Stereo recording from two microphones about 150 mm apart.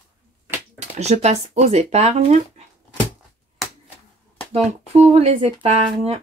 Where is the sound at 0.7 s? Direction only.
45° right (ahead or behind).